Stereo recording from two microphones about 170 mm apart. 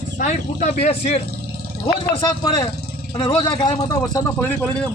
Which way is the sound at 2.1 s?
20° left (ahead or behind).